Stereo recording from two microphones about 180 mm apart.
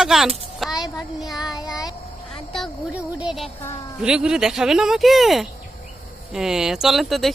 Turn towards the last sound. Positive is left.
turn(degrees=0)  # may be behind; listen again after turning